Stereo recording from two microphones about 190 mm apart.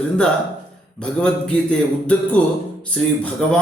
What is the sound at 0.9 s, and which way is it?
Speech, 5° left (ahead or behind).